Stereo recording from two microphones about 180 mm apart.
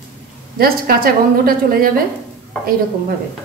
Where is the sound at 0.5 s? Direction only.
55° right (ahead or behind).